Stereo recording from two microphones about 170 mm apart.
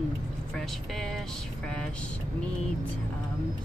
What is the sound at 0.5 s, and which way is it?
Speech, centre (ahead or behind).